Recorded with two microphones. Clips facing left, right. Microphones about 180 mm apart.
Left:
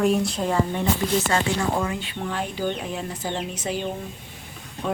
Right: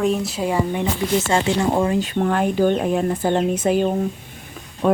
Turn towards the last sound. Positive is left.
turn(degrees=-55)  # may be behind; listen again after turning